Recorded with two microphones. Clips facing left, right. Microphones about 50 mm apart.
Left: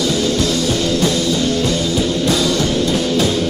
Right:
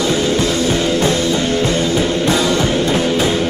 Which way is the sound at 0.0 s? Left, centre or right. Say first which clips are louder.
Right 1 dB; right.